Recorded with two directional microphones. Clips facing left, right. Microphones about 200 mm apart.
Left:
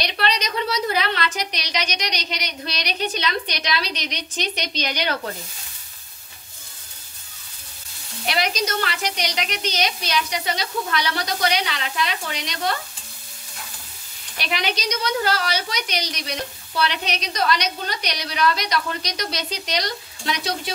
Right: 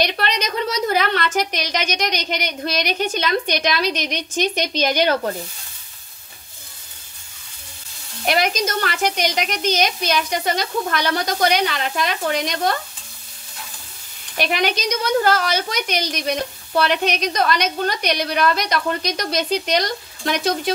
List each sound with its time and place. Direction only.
0.0 s a woman's voice: 50° right (ahead or behind)
8.3 s a woman's voice: 50° right (ahead or behind)
14.3 s a woman's voice: 50° right (ahead or behind)